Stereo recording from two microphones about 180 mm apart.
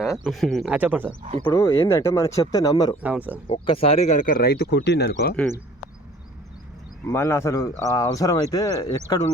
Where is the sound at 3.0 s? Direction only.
10° right (ahead or behind).